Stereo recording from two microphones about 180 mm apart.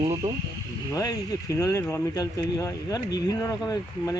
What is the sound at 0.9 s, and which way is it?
Speech, 20° left (ahead or behind).